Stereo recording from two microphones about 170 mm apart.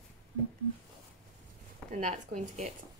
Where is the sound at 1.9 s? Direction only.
45° right (ahead or behind).